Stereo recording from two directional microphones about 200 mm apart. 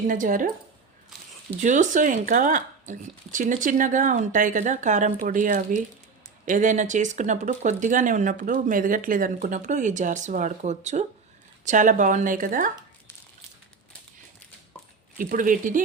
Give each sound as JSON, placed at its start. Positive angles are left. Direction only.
{"t": 0.1, "sound": "speech", "side_deg": -40}
{"t": 1.5, "sound": "speech", "side_deg": -40}
{"t": 15.2, "sound": "speech", "side_deg": -40}